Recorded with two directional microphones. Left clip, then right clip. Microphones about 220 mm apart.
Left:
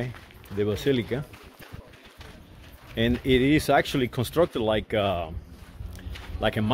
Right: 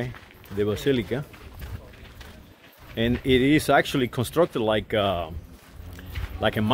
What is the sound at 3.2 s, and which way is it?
Speech, centre (ahead or behind).